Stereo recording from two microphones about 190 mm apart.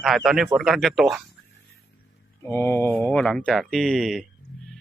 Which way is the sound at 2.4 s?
15° left (ahead or behind).